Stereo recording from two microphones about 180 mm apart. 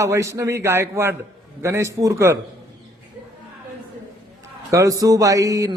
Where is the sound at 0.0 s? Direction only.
15° right (ahead or behind).